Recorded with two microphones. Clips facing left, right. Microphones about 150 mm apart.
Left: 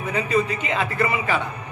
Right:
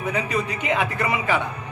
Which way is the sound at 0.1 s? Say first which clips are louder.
Left 4 dB; 15° right (ahead or behind).